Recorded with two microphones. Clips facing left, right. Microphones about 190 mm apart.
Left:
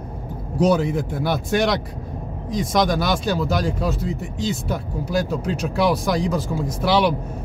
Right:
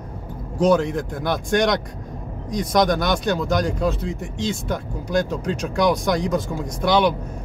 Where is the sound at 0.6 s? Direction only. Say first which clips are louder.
Even; 5° left (ahead or behind).